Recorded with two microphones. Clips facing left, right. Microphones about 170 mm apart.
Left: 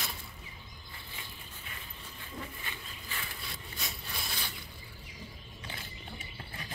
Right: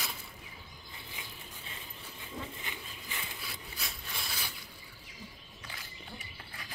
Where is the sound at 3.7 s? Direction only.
5° right (ahead or behind).